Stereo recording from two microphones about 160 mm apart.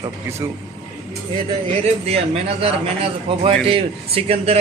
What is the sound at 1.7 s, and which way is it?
A man's voice, 40° right (ahead or behind).